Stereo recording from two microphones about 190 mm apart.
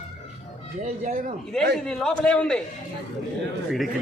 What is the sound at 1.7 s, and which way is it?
Speech, 5° left (ahead or behind).